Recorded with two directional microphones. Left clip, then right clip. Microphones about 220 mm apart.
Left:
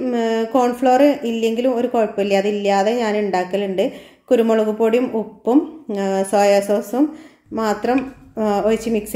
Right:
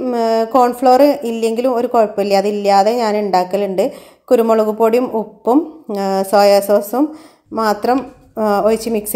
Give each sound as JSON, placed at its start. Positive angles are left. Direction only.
{"t": 0.0, "sound": "speech", "side_deg": -20}